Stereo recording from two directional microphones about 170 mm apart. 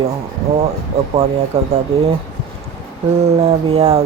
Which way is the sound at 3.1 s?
40° right (ahead or behind).